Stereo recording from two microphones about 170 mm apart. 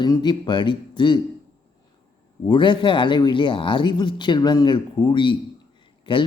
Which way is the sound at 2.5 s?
30° left (ahead or behind).